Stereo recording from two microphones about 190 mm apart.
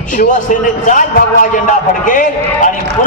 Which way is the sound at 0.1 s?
45° left (ahead or behind).